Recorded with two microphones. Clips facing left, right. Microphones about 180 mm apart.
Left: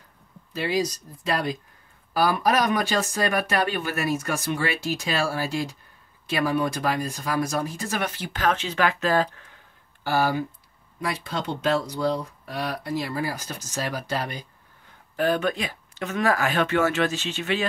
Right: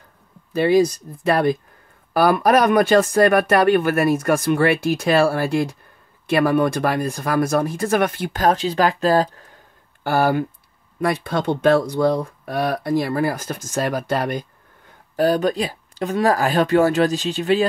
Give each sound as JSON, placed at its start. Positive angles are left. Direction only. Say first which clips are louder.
{"t": 0.7, "sound": "speech", "louder": "right 9 dB", "side_deg": -55}
{"t": 10.0, "sound": "speech", "louder": "right 5 dB", "side_deg": -55}
{"t": 15.1, "sound": "speech", "louder": "right 6 dB", "side_deg": -35}